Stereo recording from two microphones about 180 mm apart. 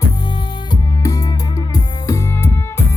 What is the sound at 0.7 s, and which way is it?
Music, 20° left (ahead or behind).